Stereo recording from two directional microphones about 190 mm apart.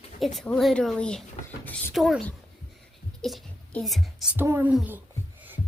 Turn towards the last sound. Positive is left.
turn(degrees=-10)  # may be behind; listen again after turning